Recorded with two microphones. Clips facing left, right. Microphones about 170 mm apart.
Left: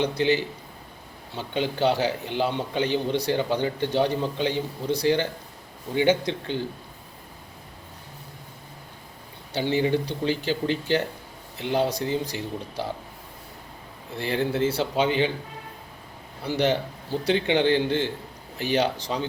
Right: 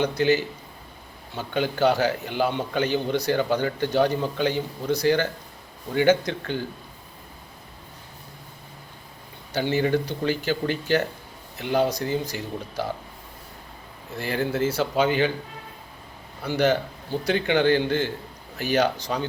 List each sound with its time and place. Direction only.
0.0 s a man's voice: 25° left (ahead or behind)
9.6 s a man's voice: 20° left (ahead or behind)
14.2 s a man's voice: 30° left (ahead or behind)
16.4 s a man's voice: 30° left (ahead or behind)